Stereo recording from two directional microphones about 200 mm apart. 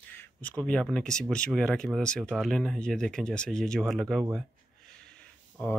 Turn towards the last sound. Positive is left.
turn(degrees=5)  # may be behind; listen again after turning